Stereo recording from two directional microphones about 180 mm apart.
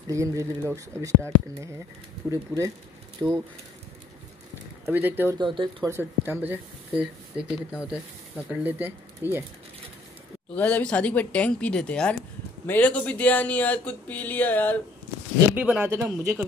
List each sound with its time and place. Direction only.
0.0 s speech: 15° right (ahead or behind)
4.9 s speech: 10° right (ahead or behind)
5.4 s speech: 25° right (ahead or behind)
5.9 s speech: 10° right (ahead or behind)
10.5 s speech: 10° left (ahead or behind)
15.5 s speech: 5° right (ahead or behind)